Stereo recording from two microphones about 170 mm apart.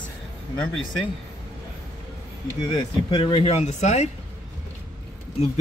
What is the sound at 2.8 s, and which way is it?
Speech, 30° left (ahead or behind).